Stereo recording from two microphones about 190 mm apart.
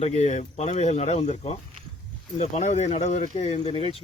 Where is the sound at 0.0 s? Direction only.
35° left (ahead or behind).